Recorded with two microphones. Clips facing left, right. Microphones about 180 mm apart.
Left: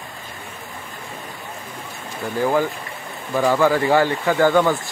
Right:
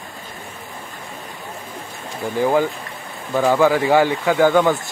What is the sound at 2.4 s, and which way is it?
Speech, 10° right (ahead or behind).